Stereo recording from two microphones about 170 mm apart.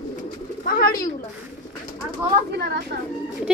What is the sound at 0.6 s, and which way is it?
Bird, 60° left (ahead or behind).